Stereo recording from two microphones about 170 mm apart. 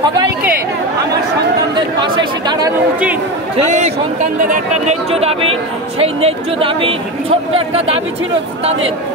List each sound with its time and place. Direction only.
2.0 s speech: 25° right (ahead or behind)
3.5 s a man's voice: 40° right (ahead or behind)